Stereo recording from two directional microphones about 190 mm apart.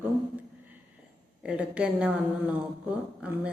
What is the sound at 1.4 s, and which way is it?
Speech, 5° right (ahead or behind).